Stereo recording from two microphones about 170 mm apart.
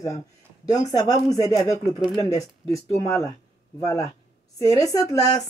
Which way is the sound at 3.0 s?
20° left (ahead or behind).